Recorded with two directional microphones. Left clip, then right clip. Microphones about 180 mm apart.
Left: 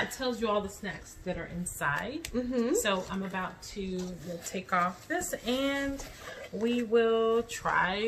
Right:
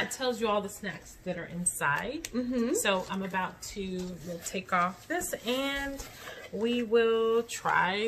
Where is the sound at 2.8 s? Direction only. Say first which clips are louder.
Right 1 dB; 30° right (ahead or behind).